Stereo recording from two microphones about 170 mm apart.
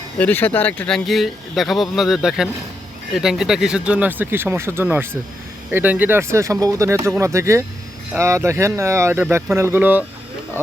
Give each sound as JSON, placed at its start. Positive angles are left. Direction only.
{"t": 0.2, "sound": "speech", "side_deg": 10}